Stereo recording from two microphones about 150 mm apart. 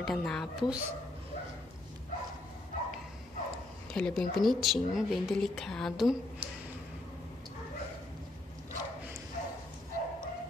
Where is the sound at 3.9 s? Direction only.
5° left (ahead or behind).